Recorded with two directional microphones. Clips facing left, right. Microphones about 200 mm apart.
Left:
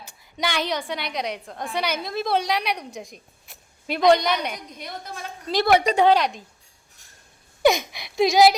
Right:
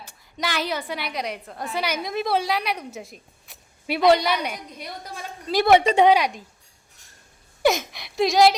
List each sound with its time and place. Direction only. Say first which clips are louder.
0.0 s a woman's voice: left 2 dB; centre (ahead or behind)
5.6 s a woman's voice: right 2 dB; 20° right (ahead or behind)
6.1 s speech: even; 10° right (ahead or behind)
7.6 s gasp: left 2 dB; centre (ahead or behind)